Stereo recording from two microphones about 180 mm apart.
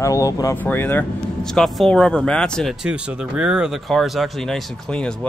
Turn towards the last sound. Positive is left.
turn(degrees=5)  # may be behind; listen again after turning